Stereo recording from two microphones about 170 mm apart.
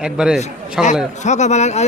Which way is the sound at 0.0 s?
5° right (ahead or behind).